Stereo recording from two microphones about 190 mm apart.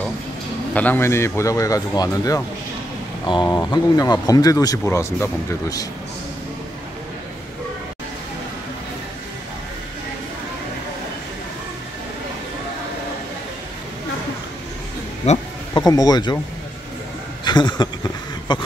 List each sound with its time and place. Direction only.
0.7 s speech: 10° left (ahead or behind)
15.3 s speech: 35° left (ahead or behind)
15.7 s speech: 20° left (ahead or behind)
17.5 s speech: 20° left (ahead or behind)